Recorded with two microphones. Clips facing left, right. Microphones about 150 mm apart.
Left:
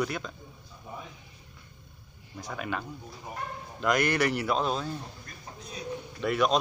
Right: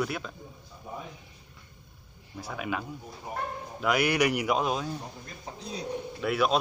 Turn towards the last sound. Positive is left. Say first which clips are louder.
# even
turn(degrees=-5)  # may be behind; listen again after turning